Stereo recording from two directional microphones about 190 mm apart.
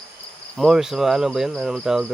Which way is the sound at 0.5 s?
Centre (ahead or behind).